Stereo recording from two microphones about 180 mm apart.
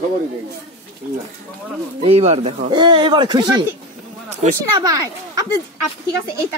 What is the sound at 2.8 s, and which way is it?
Speech, 25° right (ahead or behind).